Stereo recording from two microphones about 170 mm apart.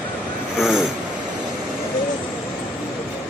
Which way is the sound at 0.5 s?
5° right (ahead or behind).